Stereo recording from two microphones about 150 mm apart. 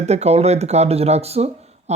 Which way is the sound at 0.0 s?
45° right (ahead or behind).